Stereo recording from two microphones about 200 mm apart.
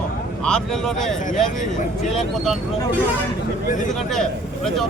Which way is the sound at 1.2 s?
40° left (ahead or behind).